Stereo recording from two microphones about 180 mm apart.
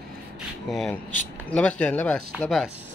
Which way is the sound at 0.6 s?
Centre (ahead or behind).